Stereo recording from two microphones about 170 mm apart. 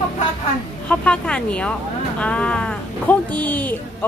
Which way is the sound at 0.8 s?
5° left (ahead or behind).